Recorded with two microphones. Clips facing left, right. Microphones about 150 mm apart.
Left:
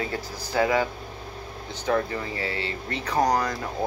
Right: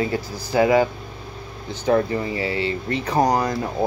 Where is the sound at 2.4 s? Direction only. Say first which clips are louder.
Right 7 dB; 15° right (ahead or behind).